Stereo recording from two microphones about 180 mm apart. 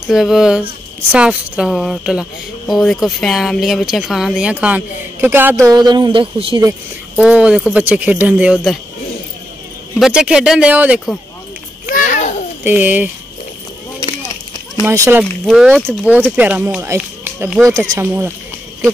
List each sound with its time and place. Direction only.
0.1 s speech: centre (ahead or behind); by 6.6 s 30° right (ahead or behind)
7.2 s speech: 5° right (ahead or behind)
9.9 s speech: 5° right (ahead or behind)
11.9 s babbling: 45° left (ahead or behind)
12.6 s speech: 10° right (ahead or behind)
14.9 s speech: 15° right (ahead or behind)
15.4 s speech: centre (ahead or behind)